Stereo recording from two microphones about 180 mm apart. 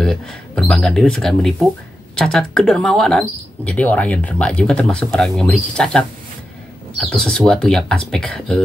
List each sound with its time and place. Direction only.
0.0 s speech: centre (ahead or behind)